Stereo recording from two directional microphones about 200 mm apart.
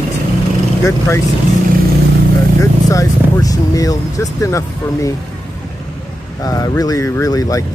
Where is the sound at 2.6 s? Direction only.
15° left (ahead or behind).